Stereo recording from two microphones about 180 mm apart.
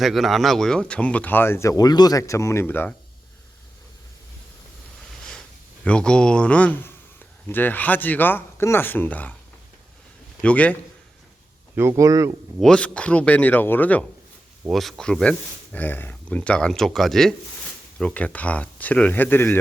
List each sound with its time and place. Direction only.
0.0 s speech: centre (ahead or behind)
5.8 s speech: 5° left (ahead or behind)
10.4 s speech: 5° left (ahead or behind)
11.7 s speech: 15° right (ahead or behind)
12.5 s speech: 5° left (ahead or behind)